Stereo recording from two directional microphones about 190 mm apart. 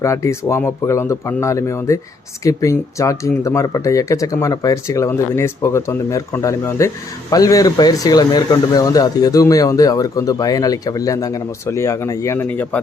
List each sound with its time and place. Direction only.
0.0 s speech: 15° left (ahead or behind)